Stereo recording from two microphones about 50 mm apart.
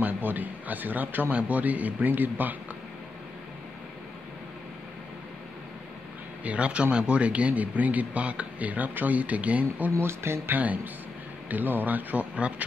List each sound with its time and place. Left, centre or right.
0.0 s a man's voice: right
6.4 s speech: right
9.9 s speech: right
10.5 s speech: right